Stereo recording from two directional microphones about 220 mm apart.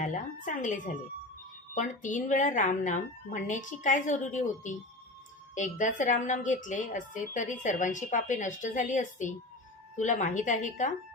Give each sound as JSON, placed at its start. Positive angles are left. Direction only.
{"t": 0.0, "sound": "a woman's voice", "side_deg": 35}